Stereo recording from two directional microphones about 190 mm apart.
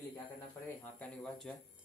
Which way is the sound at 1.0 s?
5° left (ahead or behind).